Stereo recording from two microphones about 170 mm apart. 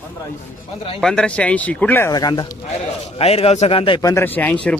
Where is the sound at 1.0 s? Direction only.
5° left (ahead or behind); by 2.5 s 25° left (ahead or behind).